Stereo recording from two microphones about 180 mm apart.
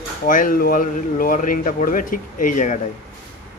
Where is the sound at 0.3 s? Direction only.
50° left (ahead or behind).